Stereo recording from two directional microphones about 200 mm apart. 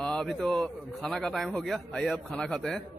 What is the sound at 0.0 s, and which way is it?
A man's voice, 5° left (ahead or behind).